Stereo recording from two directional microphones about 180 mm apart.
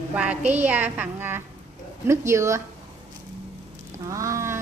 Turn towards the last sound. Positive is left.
turn(degrees=-15)  # may be behind; listen again after turning